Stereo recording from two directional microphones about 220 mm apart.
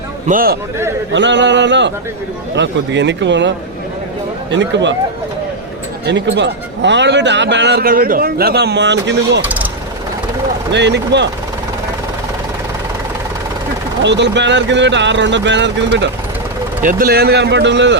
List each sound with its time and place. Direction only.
0.3 s a man's voice: 40° right (ahead or behind)
1.1 s a man's voice: 55° right (ahead or behind)
4.5 s speech: 55° right (ahead or behind)
6.1 s a man's voice: 55° right (ahead or behind)
9.4 s speech: 5° right (ahead or behind)
10.7 s a man's voice: 50° right (ahead or behind)
14.0 s a man's voice: 55° right (ahead or behind)
16.8 s a man's voice: 40° right (ahead or behind)